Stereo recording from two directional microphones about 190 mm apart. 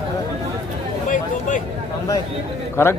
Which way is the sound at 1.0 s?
40° left (ahead or behind).